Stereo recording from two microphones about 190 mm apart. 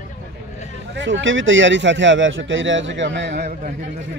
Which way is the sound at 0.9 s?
70° right (ahead or behind).